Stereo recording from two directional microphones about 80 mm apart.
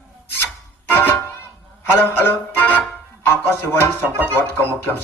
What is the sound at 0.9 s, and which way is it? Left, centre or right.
Music, left.